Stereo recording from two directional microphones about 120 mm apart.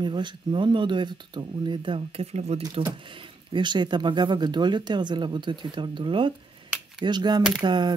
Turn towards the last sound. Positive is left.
turn(degrees=-40)  # may be behind; listen again after turning